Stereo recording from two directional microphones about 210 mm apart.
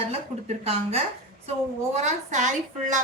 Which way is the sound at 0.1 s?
30° right (ahead or behind).